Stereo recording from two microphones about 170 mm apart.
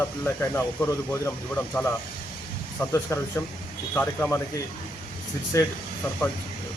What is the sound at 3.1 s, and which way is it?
Speech, 15° left (ahead or behind).